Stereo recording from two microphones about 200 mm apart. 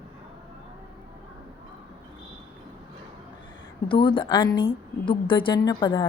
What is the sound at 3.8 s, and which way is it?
A woman's voice, 25° left (ahead or behind).